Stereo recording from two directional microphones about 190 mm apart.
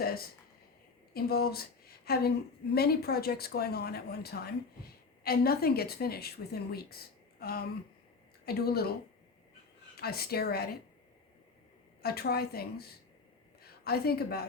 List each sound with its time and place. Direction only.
0.0 s a sound: 55° left (ahead or behind)
1.1 s a woman's voice: 55° left (ahead or behind)
10.0 s speech: 55° left (ahead or behind)
12.0 s a woman's voice: 55° left (ahead or behind)